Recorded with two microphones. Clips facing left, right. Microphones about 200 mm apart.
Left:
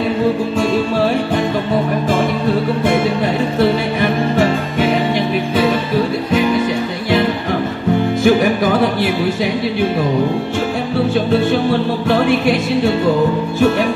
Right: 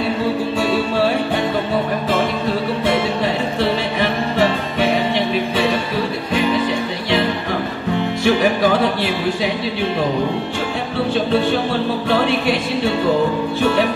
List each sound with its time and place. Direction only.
3.5 s music: 45° left (ahead or behind)
8.2 s music: 45° left (ahead or behind)
12.1 s music: 45° left (ahead or behind)